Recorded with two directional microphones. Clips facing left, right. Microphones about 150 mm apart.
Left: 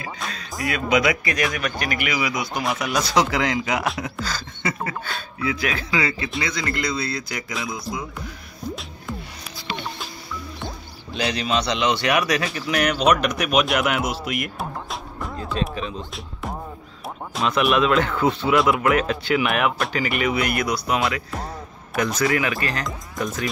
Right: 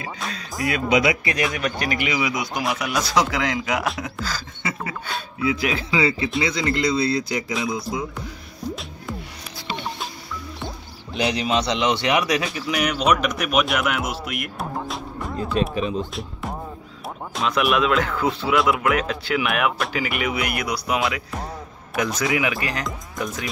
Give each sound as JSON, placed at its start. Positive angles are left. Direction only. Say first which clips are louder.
{"t": 0.6, "sound": "speech", "louder": "right 1 dB", "side_deg": -25}
{"t": 2.5, "sound": "speech", "louder": "even", "side_deg": -5}
{"t": 5.4, "sound": "speech", "louder": "right 2 dB", "side_deg": -20}
{"t": 7.5, "sound": "speech", "louder": "right 3 dB", "side_deg": -5}
{"t": 11.1, "sound": "speech", "louder": "right 2 dB", "side_deg": -20}
{"t": 12.4, "sound": "speech", "louder": "left 1 dB", "side_deg": 0}
{"t": 14.4, "sound": "music", "louder": "right 1 dB", "side_deg": 0}
{"t": 15.5, "sound": "speech", "louder": "right 5 dB", "side_deg": -10}
{"t": 17.3, "sound": "speech", "louder": "left 1 dB", "side_deg": 0}
{"t": 22.8, "sound": "speech", "louder": "left 1 dB", "side_deg": 0}